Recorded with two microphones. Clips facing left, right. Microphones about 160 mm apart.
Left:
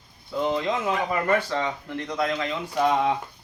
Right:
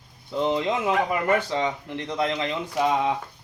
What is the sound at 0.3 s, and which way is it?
A man's voice, 20° right (ahead or behind).